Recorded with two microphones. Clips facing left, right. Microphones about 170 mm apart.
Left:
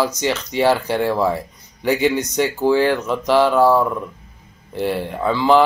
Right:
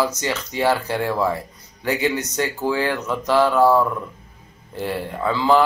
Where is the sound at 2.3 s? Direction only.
20° left (ahead or behind).